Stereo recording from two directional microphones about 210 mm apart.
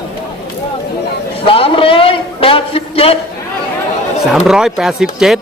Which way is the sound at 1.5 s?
25° left (ahead or behind).